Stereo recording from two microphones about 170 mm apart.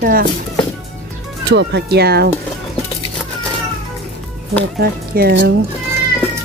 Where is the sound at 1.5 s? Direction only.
90° right; by 2.3 s 70° right (ahead or behind).